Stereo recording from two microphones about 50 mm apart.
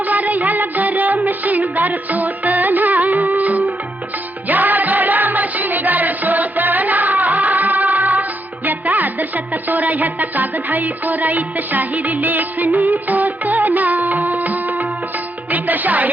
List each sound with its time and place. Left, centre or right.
0.0 s music: right